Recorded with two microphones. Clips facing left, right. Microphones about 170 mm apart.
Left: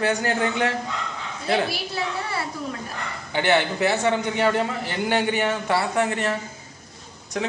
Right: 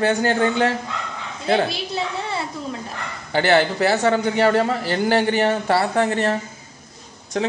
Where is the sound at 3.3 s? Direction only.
35° right (ahead or behind).